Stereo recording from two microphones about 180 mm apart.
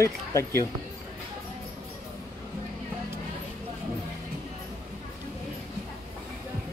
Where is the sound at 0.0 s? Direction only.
15° left (ahead or behind).